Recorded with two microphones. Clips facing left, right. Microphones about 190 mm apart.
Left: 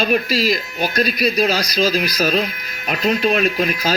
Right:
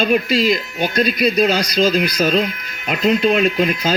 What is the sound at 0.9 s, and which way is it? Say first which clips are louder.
Speech: right 3 dB; 30° right (ahead or behind).